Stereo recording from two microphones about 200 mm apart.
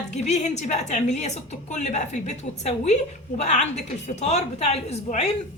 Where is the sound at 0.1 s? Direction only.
35° left (ahead or behind).